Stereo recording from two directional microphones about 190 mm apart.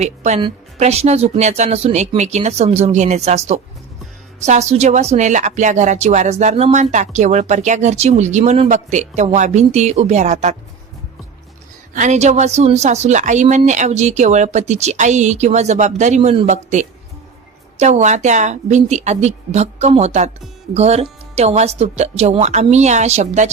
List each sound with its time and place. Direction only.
0.0 s a woman's voice: 35° right (ahead or behind)
11.9 s a woman's voice: 40° right (ahead or behind)